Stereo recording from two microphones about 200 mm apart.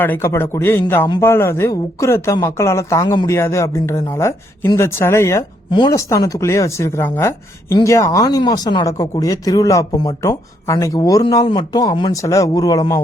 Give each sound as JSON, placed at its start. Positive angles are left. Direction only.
{"t": 0.0, "sound": "speech", "side_deg": 10}